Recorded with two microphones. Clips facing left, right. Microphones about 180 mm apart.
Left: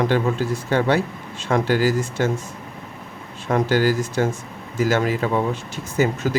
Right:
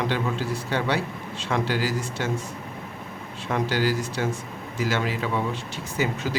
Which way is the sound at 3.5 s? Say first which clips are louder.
Left 6 dB; 45° left (ahead or behind).